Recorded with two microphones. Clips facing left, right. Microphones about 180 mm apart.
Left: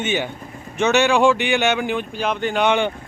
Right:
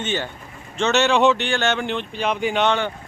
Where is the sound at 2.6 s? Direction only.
15° left (ahead or behind).